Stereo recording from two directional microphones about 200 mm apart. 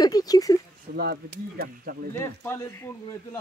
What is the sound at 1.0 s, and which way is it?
Speech, 50° right (ahead or behind).